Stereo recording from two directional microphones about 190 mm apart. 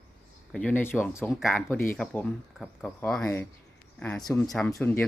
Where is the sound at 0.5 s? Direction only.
10° left (ahead or behind).